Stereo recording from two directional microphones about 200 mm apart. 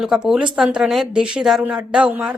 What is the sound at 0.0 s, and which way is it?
Speech, centre (ahead or behind).